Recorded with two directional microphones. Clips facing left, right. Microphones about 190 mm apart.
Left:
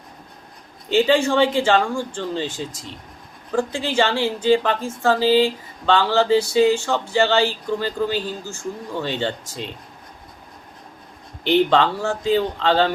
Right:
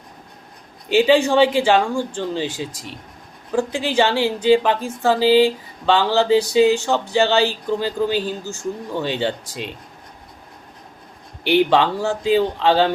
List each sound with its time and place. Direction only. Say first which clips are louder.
0.9 s a woman's voice: right 2 dB; 15° right (ahead or behind)
11.4 s a woman's voice: right 1 dB; 15° right (ahead or behind)